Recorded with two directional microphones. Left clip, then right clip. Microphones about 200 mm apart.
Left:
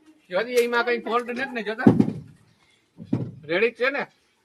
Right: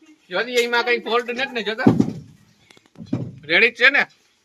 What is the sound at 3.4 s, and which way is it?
Speech, 10° right (ahead or behind).